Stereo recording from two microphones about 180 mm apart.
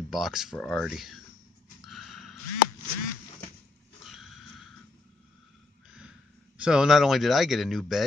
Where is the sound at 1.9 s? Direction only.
Centre (ahead or behind).